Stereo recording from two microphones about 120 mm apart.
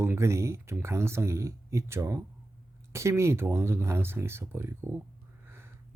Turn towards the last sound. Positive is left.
turn(degrees=-20)  # may be behind; listen again after turning